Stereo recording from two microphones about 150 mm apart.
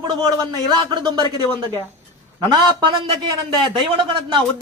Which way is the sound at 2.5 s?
30° right (ahead or behind).